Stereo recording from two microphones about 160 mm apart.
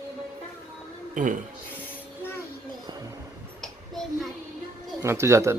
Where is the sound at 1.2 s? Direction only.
55° right (ahead or behind).